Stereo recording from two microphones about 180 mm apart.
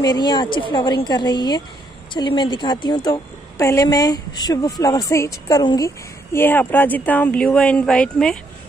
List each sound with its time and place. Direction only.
0.0 s a woman's voice: 25° left (ahead or behind); by 8.4 s 5° left (ahead or behind)